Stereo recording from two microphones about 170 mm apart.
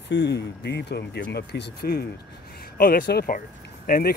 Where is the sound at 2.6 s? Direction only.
60° left (ahead or behind).